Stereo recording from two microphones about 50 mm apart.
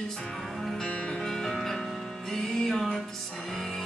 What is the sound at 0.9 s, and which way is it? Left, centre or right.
Music, left.